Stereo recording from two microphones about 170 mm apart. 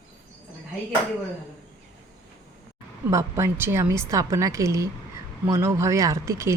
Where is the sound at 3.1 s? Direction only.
15° right (ahead or behind).